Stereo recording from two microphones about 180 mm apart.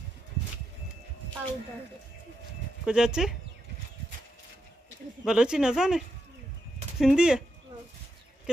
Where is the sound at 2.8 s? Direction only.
5° right (ahead or behind).